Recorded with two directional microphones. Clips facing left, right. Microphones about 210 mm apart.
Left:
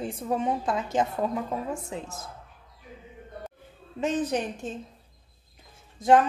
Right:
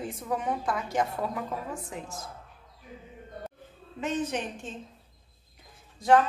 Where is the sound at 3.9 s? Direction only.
35° left (ahead or behind).